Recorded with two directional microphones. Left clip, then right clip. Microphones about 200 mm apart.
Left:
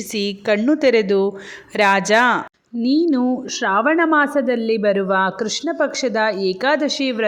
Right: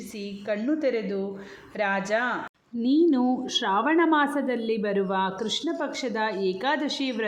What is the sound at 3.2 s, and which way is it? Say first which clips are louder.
A woman's voice: left 5 dB; 25° left (ahead or behind).